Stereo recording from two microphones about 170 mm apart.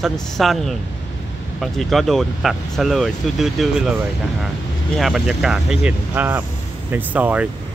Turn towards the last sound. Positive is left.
turn(degrees=-10)  # may be behind; listen again after turning